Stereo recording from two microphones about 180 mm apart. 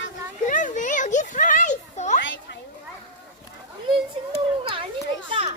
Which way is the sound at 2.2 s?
90° left.